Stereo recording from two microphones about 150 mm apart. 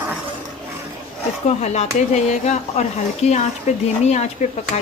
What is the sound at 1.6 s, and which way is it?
Speech, 50° left (ahead or behind).